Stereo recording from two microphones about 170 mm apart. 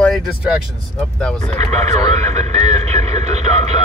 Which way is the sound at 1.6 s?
40° right (ahead or behind).